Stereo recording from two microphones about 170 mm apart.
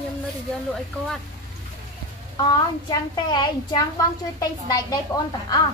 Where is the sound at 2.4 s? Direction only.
25° left (ahead or behind).